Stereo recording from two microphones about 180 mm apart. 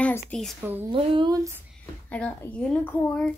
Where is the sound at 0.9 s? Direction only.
25° right (ahead or behind).